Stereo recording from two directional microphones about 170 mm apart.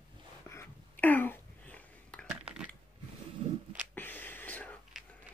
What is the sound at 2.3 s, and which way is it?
Crushing, 5° right (ahead or behind).